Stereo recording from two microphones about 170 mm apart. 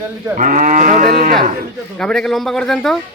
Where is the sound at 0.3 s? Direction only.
50° right (ahead or behind).